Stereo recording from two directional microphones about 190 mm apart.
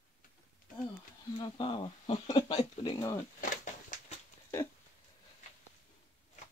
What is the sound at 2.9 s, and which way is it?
Speech, 15° left (ahead or behind).